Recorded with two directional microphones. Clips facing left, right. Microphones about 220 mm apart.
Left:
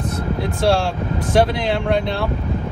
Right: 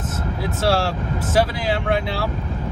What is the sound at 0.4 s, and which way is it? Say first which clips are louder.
Speech: left 2 dB; 5° right (ahead or behind).